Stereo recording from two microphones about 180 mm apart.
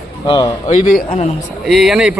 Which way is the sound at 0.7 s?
45° left (ahead or behind).